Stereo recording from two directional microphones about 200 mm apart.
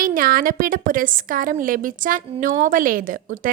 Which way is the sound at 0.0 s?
45° right (ahead or behind).